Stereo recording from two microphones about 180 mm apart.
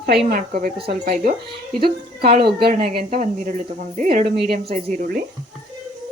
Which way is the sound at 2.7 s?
35° right (ahead or behind).